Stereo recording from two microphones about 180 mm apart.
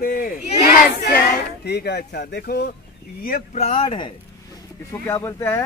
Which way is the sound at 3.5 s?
35° left (ahead or behind).